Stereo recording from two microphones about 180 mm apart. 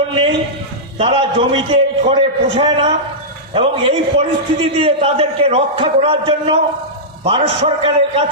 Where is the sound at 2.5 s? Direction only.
30° right (ahead or behind).